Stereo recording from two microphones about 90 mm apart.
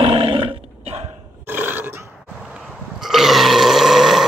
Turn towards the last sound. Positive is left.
turn(degrees=-5)  # may be behind; listen again after turning